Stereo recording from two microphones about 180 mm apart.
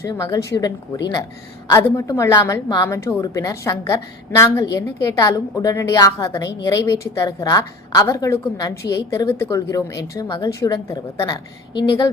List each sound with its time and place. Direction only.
0.0 s a woman's voice: 20° left (ahead or behind)